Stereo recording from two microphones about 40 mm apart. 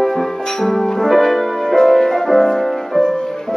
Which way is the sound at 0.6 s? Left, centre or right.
Centre.